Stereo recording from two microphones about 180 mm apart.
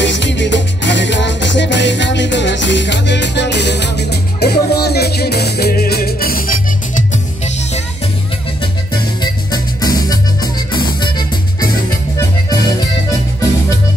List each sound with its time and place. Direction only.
0.0 s music: 80° left; by 6.5 s 55° left (ahead or behind)
7.0 s music: 40° left (ahead or behind)
9.2 s music: 20° left (ahead or behind)